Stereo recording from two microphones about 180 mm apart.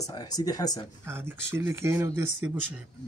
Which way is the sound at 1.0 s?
15° right (ahead or behind).